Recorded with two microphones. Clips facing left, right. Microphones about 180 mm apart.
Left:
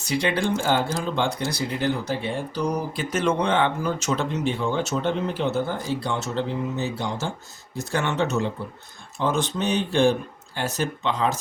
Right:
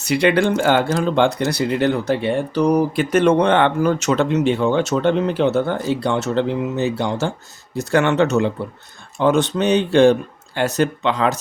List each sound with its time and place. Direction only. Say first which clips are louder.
0.0 s speech: right 8 dB; 70° right (ahead or behind)